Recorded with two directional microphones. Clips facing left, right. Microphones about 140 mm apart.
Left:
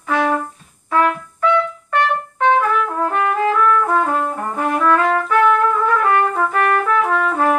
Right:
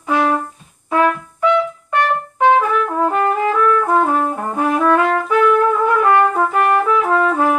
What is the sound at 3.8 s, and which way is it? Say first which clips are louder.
Trumpet: right 2 dB; 15° right (ahead or behind).